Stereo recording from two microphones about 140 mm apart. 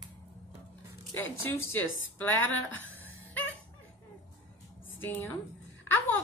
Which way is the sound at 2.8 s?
10° left (ahead or behind).